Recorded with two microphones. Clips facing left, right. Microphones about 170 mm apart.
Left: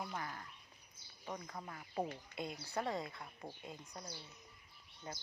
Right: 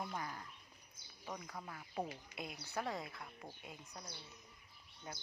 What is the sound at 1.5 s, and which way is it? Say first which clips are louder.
Speech: left 1 dB; centre (ahead or behind).